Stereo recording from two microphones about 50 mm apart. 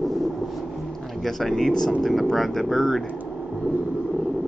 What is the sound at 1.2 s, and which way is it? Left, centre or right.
Speech, centre.